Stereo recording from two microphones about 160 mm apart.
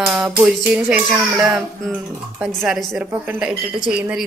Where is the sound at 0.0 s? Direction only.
5° right (ahead or behind).